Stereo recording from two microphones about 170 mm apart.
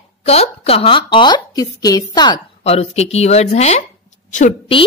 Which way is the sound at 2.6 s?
40° left (ahead or behind).